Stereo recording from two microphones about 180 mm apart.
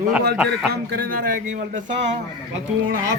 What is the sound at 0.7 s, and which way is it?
Speech, 55° right (ahead or behind).